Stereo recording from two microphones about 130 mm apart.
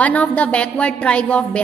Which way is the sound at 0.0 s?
10° left (ahead or behind).